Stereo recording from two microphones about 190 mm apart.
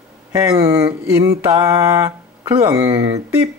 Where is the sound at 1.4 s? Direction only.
15° right (ahead or behind).